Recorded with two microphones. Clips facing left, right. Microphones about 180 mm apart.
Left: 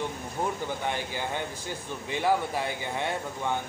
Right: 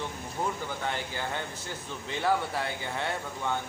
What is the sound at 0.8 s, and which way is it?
Speech, 15° left (ahead or behind).